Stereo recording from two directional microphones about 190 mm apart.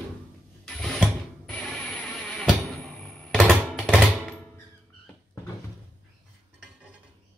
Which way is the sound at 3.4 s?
5° right (ahead or behind).